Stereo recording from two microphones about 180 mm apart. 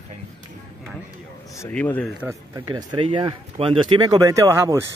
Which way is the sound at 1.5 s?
10° left (ahead or behind).